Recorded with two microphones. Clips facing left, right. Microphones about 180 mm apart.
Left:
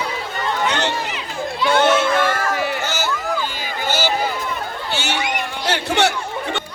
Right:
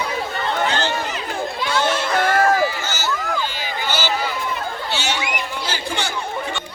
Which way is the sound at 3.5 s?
50° left (ahead or behind).